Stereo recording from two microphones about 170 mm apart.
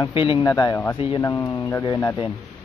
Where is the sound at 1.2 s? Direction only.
20° left (ahead or behind).